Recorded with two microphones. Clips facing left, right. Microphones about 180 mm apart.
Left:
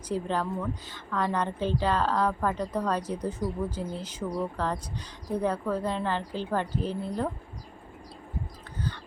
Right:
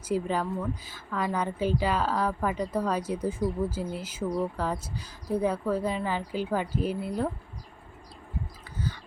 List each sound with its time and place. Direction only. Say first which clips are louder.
0.1 s a woman's voice: right 1 dB; 10° right (ahead or behind)